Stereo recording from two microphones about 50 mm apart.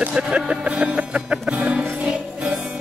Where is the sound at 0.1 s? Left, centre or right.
Centre.